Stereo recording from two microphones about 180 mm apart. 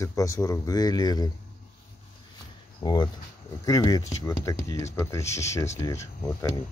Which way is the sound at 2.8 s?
25° left (ahead or behind).